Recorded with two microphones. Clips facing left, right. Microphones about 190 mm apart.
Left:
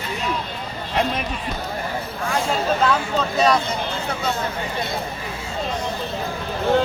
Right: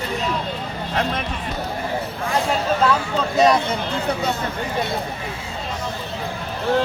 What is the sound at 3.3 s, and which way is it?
Speech, 20° right (ahead or behind).